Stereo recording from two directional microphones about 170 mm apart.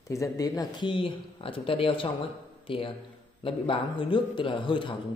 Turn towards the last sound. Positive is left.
turn(degrees=30)  # may be behind; listen again after turning